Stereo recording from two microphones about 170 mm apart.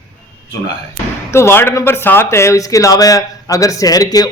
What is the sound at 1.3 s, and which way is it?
Speech, 15° left (ahead or behind).